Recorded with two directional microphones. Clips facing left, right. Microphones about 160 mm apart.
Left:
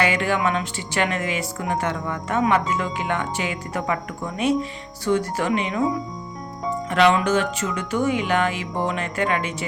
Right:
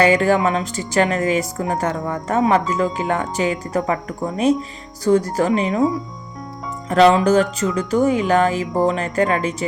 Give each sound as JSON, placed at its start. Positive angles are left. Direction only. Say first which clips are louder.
{"t": 0.0, "sound": "a woman's voice", "louder": "right 6 dB", "side_deg": -40}
{"t": 6.9, "sound": "a woman's voice", "louder": "right 6 dB", "side_deg": -35}